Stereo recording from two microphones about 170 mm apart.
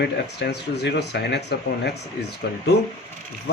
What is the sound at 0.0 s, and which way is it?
Speech, 75° left (ahead or behind).